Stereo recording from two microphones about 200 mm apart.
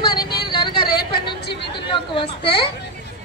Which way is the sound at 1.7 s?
25° left (ahead or behind).